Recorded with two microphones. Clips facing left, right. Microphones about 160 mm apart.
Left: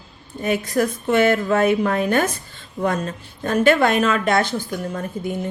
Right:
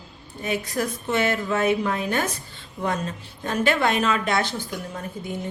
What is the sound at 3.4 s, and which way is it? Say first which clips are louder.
A woman's voice: left 6 dB; 50° left (ahead or behind).